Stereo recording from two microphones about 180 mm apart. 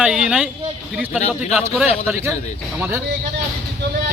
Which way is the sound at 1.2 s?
35° left (ahead or behind).